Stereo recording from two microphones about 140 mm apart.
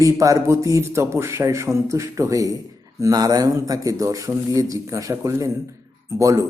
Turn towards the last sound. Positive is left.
turn(degrees=-20)  # may be behind; listen again after turning